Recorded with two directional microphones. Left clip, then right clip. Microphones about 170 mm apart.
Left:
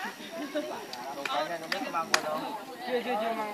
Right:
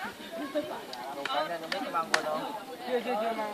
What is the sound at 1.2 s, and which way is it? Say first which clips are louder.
Speech: even; 5° left (ahead or behind).